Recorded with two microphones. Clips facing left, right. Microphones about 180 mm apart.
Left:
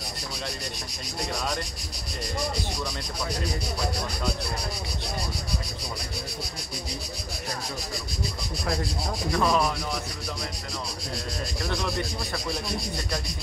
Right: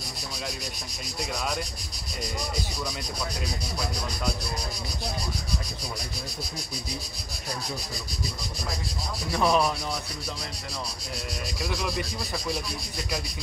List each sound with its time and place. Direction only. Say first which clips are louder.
9.3 s speech: right 1 dB; 15° right (ahead or behind)